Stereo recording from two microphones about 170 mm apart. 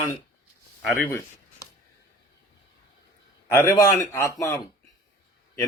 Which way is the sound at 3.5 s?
15° left (ahead or behind).